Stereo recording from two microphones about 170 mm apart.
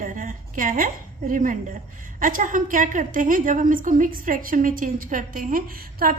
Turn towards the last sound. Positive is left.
turn(degrees=-60)  # may be behind; listen again after turning